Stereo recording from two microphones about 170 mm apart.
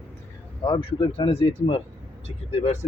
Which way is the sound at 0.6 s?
30° left (ahead or behind).